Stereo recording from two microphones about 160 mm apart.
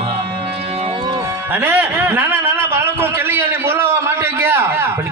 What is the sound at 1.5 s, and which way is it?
A man's voice, 10° right (ahead or behind).